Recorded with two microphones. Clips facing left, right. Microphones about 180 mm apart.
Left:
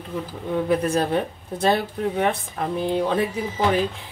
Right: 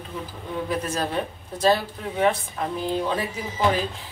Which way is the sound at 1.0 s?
55° left (ahead or behind).